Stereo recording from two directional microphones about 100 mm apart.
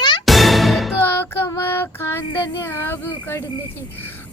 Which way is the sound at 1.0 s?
25° left (ahead or behind).